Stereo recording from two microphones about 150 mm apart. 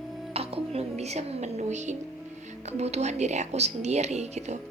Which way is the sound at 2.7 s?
45° right (ahead or behind).